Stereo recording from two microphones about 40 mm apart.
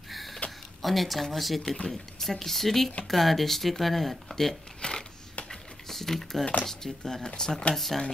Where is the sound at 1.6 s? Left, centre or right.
Left.